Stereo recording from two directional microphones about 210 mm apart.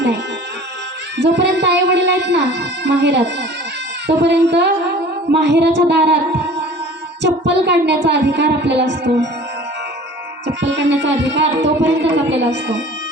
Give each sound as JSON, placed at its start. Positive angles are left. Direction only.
{"t": 1.2, "sound": "speech", "side_deg": -55}
{"t": 10.4, "sound": "speech", "side_deg": -60}